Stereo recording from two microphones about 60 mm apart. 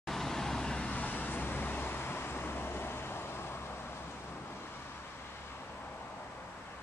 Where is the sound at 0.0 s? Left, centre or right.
Centre; by 3.4 s left.